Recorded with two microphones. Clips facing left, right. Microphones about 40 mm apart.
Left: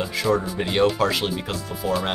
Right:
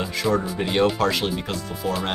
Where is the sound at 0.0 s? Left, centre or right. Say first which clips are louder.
Left 1 dB; centre.